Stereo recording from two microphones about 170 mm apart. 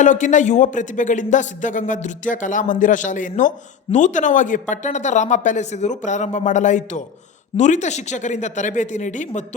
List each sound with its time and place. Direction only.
0.0 s speech: 45° left (ahead or behind)